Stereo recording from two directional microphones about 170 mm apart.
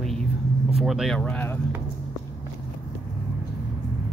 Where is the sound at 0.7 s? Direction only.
Centre (ahead or behind).